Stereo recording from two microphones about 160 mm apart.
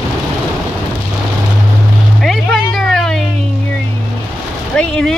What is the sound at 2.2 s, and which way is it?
Music, centre (ahead or behind).